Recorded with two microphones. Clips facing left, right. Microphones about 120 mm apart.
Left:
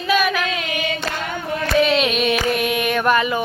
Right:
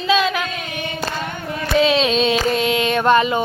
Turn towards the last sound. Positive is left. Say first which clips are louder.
# right 3 dB
turn(degrees=-25)  # may be behind; listen again after turning